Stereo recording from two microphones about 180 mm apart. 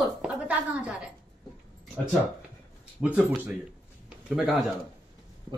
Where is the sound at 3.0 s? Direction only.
5° right (ahead or behind).